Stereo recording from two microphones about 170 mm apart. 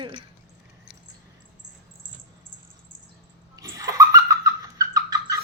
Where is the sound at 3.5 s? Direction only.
20° right (ahead or behind).